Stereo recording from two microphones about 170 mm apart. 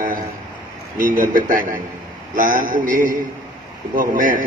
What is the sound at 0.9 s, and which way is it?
A man's voice, 55° right (ahead or behind).